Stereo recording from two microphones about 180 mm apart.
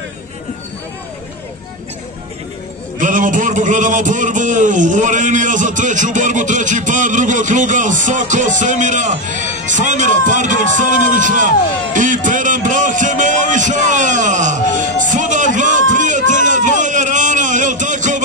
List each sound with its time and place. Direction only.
3.0 s a man's voice: 45° right (ahead or behind)